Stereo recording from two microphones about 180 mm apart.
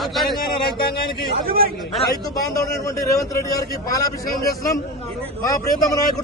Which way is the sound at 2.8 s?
20° left (ahead or behind).